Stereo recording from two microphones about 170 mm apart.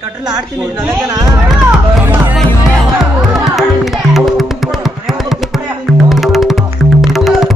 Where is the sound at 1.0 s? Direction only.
20° right (ahead or behind).